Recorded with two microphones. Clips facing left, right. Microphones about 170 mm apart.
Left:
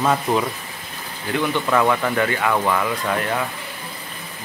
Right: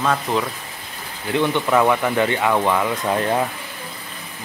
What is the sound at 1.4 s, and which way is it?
Speech, 15° right (ahead or behind).